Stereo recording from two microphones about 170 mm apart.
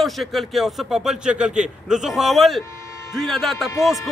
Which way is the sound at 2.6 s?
15° left (ahead or behind).